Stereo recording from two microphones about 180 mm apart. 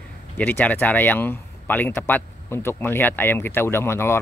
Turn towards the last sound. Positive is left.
turn(degrees=15)  # may be behind; listen again after turning